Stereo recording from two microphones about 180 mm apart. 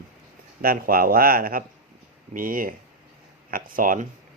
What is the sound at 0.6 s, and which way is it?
Speech, 55° right (ahead or behind).